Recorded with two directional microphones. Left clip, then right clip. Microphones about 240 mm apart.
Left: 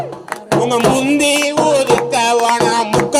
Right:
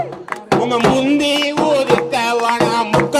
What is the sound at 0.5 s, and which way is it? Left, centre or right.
Music, left.